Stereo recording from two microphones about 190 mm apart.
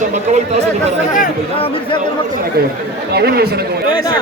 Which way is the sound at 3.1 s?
60° right (ahead or behind).